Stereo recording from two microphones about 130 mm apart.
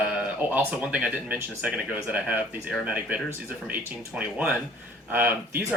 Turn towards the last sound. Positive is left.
turn(degrees=-15)  # may be behind; listen again after turning